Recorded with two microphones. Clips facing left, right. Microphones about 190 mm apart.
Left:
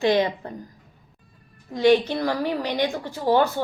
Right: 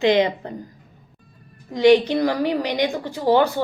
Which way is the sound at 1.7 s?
15° right (ahead or behind).